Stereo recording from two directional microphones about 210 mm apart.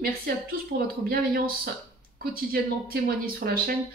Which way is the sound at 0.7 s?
45° right (ahead or behind).